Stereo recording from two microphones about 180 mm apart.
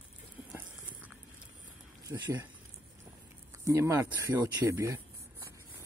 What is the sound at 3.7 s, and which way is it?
Speech, 15° right (ahead or behind).